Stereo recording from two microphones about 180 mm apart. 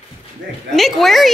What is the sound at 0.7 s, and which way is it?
Speech, centre (ahead or behind).